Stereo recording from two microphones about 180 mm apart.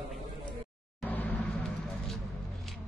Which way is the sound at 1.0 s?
10° left (ahead or behind).